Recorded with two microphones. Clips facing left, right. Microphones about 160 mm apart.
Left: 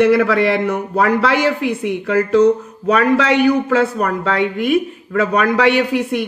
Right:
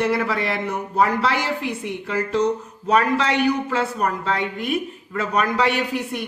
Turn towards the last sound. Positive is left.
turn(degrees=75)  # may be behind; listen again after turning